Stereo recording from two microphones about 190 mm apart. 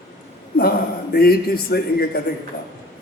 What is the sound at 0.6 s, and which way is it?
A man's voice, 55° left (ahead or behind).